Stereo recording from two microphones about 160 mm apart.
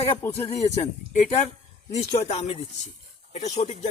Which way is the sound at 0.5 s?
45° left (ahead or behind).